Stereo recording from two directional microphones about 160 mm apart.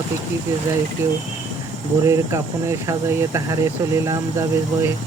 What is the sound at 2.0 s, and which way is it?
Speech, 20° right (ahead or behind).